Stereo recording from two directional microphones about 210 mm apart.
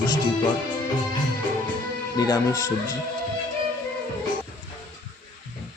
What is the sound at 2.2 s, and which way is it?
Speech, 15° left (ahead or behind).